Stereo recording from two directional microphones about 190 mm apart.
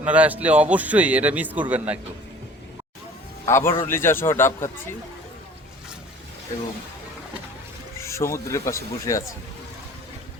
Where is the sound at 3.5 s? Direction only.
15° left (ahead or behind).